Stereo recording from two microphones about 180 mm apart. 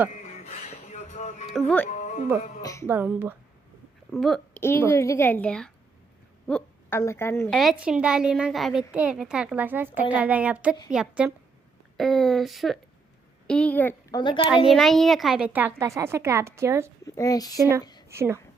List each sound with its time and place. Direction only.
0.2 s music: 40° left (ahead or behind)
1.5 s a woman's voice: 5° left (ahead or behind)
1.9 s music: 40° left (ahead or behind)
2.6 s speech: 20° left (ahead or behind)
2.8 s a woman's voice: 10° right (ahead or behind)
4.1 s a woman's voice: centre (ahead or behind)
4.6 s a woman's voice: 15° left (ahead or behind)
7.5 s a woman's voice: centre (ahead or behind)
14.2 s speech: 25° left (ahead or behind)
14.4 s a woman's voice: 5° right (ahead or behind)
17.2 s speech: 20° left (ahead or behind)
18.1 s speech: 15° right (ahead or behind)